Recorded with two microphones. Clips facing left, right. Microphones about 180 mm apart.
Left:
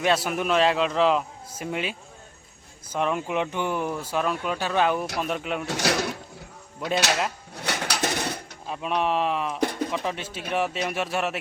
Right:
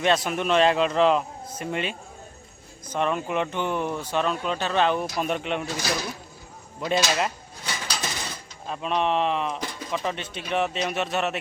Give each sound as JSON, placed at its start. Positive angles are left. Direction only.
{"t": 0.0, "sound": "a man's voice", "side_deg": 5}
{"t": 5.6, "sound": "speech", "side_deg": 70}
{"t": 7.5, "sound": "dishes", "side_deg": 65}
{"t": 8.6, "sound": "a man's voice", "side_deg": 10}
{"t": 9.6, "sound": "pigeon", "side_deg": 60}
{"t": 9.9, "sound": "speech", "side_deg": 10}